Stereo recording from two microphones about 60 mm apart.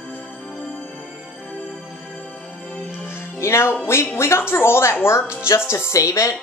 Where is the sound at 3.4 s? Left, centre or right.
Left.